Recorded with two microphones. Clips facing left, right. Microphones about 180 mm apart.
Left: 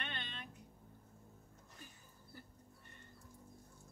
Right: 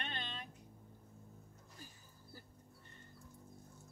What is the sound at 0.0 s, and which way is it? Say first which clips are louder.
Music: right 2 dB; 35° right (ahead or behind).